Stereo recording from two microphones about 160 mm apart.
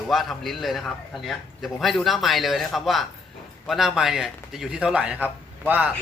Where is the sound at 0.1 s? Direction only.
Centre (ahead or behind).